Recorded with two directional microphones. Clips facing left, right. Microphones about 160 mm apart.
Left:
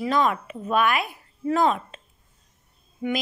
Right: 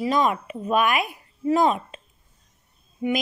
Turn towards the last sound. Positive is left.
turn(degrees=-10)  # may be behind; listen again after turning